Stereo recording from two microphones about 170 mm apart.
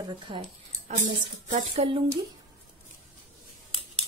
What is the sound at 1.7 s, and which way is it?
Speech, 30° right (ahead or behind).